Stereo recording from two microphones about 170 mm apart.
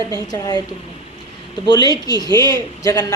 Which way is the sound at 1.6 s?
25° left (ahead or behind).